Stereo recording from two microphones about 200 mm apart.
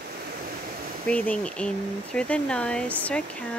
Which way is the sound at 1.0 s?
5° left (ahead or behind).